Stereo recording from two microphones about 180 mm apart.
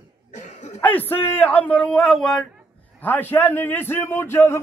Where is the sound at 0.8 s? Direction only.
10° left (ahead or behind).